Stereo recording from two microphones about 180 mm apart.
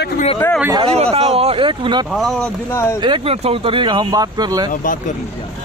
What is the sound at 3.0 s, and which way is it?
Speech, 30° right (ahead or behind).